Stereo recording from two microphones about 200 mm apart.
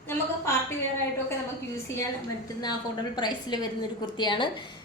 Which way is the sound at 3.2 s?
20° left (ahead or behind).